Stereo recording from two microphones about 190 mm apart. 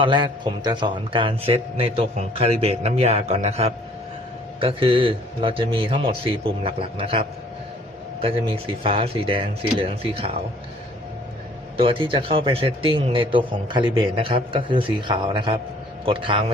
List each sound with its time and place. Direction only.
0.0 s a man's voice: 25° right (ahead or behind)
11.8 s speech: 30° right (ahead or behind)